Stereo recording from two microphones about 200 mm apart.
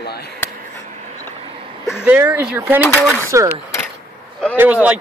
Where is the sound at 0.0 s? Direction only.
50° left (ahead or behind).